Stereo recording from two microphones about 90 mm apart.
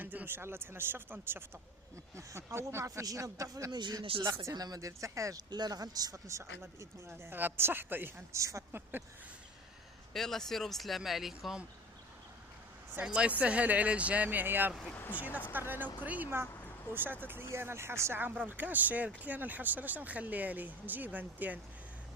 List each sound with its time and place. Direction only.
0.0 s speech: 20° right (ahead or behind); by 3.7 s 35° right (ahead or behind)
3.7 s speech: 55° right (ahead or behind)
4.0 s speech: 80° right
4.5 s speech: 45° right (ahead or behind)
5.5 s speech: 50° right (ahead or behind)
7.2 s speech: 25° right (ahead or behind)
10.1 s speech: 5° left (ahead or behind)
13.0 s speech: 10° right (ahead or behind)
14.9 s speech: 20° left (ahead or behind)
15.2 s speech: 15° right (ahead or behind)
18.4 s speech: 20° right (ahead or behind)